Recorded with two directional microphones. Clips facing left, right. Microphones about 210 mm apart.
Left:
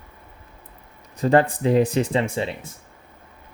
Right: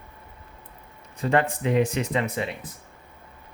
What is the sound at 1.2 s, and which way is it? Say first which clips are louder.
Speech: left 5 dB; 35° left (ahead or behind).